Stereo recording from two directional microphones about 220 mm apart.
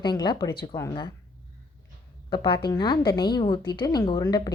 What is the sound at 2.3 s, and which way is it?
A woman's voice, 20° left (ahead or behind).